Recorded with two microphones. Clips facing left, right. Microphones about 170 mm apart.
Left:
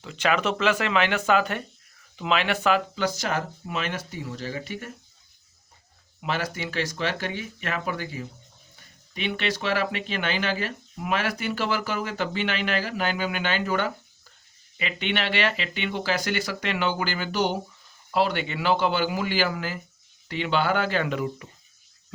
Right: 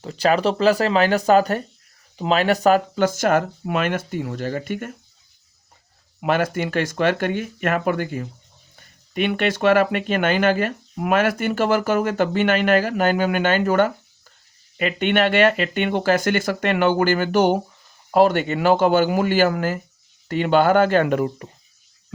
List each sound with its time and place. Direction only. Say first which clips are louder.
0.0 s speech: right 6 dB; 40° right (ahead or behind); by 4.9 s 55° right (ahead or behind)
6.1 s speech: right 9 dB; 55° right (ahead or behind)